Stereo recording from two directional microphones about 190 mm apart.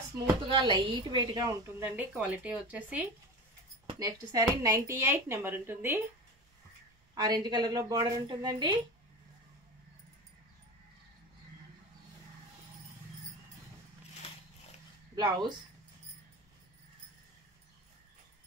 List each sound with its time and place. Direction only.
0.5 s a woman's voice: 25° right (ahead or behind); by 3.1 s 5° right (ahead or behind)
3.8 s a woman's voice: 20° right (ahead or behind)
7.2 s a woman's voice: 20° right (ahead or behind)
15.1 s a woman's voice: 20° right (ahead or behind)